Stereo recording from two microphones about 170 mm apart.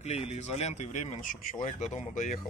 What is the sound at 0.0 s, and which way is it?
A man's voice, 40° left (ahead or behind).